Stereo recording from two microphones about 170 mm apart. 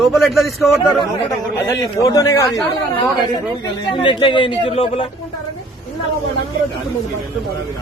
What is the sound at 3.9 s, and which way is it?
A man's voice, 30° left (ahead or behind).